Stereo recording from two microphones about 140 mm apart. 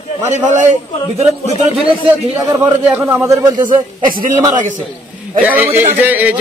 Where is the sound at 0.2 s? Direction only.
55° right (ahead or behind).